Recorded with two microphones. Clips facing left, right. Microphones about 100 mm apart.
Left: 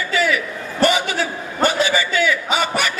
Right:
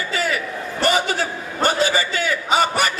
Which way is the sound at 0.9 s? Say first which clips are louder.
Even; 45° right (ahead or behind).